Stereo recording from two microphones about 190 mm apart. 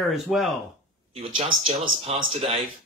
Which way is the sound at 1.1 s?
30° right (ahead or behind).